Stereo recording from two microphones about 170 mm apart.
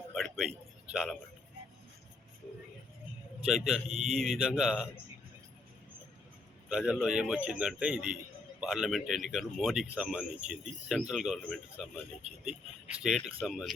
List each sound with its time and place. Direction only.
0.1 s a sound: centre (ahead or behind)
3.4 s speech: centre (ahead or behind)
6.7 s speech: 5° right (ahead or behind)
13.0 s speech: centre (ahead or behind)